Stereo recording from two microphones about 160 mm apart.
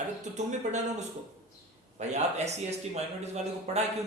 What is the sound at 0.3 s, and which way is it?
Speech, 45° right (ahead or behind).